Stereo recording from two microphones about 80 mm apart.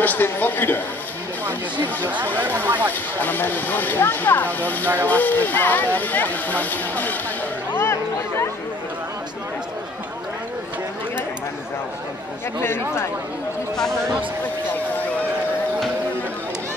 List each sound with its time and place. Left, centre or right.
0.0 s speech: left
2.2 s speech: right
2.9 s speech: left
7.7 s a sound: left
12.6 s speech: left